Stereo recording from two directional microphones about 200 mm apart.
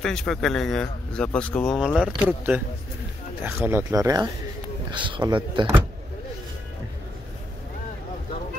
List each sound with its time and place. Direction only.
0.0 s a man's voice: 5° left (ahead or behind); by 5.7 s 25° right (ahead or behind)